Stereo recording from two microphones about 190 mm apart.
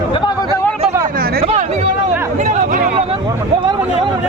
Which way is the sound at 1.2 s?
50° right (ahead or behind).